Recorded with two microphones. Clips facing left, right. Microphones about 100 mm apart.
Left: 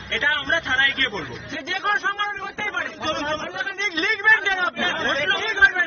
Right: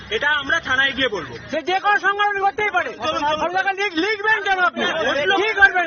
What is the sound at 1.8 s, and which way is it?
Speech, 50° right (ahead or behind).